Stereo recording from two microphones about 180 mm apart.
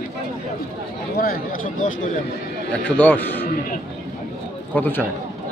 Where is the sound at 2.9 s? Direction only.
10° left (ahead or behind).